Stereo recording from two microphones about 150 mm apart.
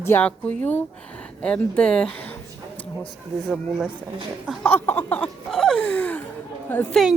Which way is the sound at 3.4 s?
Centre (ahead or behind).